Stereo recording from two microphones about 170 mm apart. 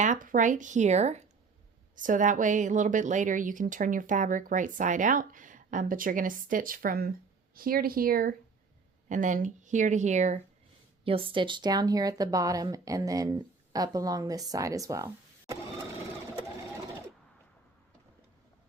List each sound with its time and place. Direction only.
0.0 s a woman's voice: 50° right (ahead or behind)
11.0 s speech: 30° right (ahead or behind)